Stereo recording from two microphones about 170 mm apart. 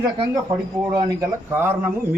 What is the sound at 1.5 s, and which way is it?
Speech, 15° right (ahead or behind).